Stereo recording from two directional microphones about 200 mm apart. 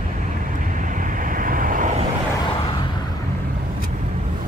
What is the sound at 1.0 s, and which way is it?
Vehicle, 45° right (ahead or behind).